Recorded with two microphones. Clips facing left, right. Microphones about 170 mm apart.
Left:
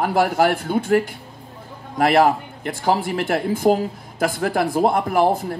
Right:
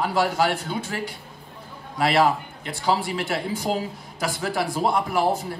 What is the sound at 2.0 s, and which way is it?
Speech, 50° left (ahead or behind).